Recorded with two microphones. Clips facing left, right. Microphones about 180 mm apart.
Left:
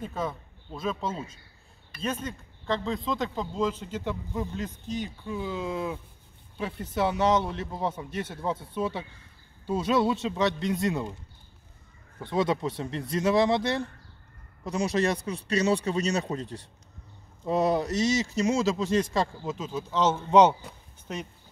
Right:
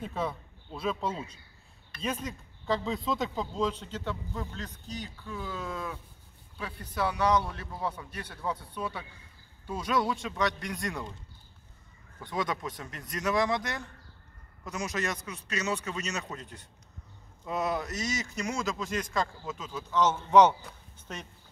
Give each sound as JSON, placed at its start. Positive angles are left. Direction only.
{"t": 0.0, "sound": "speech", "side_deg": 0}
{"t": 12.2, "sound": "a man's voice", "side_deg": 25}